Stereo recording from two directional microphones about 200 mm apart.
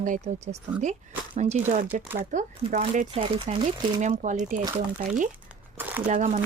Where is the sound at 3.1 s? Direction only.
25° right (ahead or behind).